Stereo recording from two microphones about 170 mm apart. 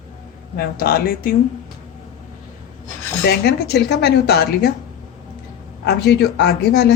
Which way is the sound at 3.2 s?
75° left (ahead or behind).